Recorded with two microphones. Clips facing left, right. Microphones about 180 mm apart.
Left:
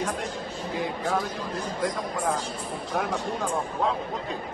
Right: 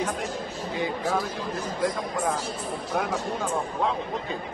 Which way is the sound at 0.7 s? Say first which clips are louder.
Right 1 dB; 5° right (ahead or behind).